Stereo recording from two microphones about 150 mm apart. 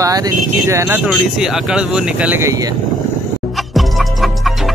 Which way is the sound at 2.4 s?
25° right (ahead or behind).